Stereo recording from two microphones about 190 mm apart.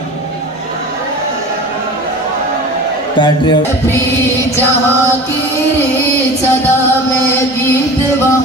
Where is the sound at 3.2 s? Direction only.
25° left (ahead or behind).